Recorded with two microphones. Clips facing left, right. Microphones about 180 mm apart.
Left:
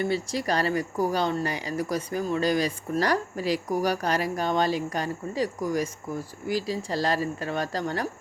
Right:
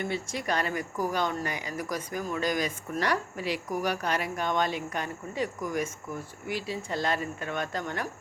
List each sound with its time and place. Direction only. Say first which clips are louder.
0.0 s speech: left 5 dB; 35° left (ahead or behind)